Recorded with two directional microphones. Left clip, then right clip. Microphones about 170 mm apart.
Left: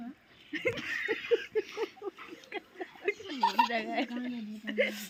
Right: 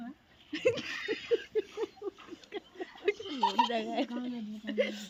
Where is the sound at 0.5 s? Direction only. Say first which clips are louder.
Right 2 dB; 25° right (ahead or behind).